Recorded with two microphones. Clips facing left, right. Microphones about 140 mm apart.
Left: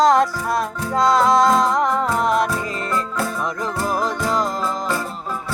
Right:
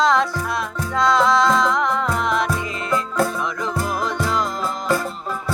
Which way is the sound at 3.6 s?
40° left (ahead or behind).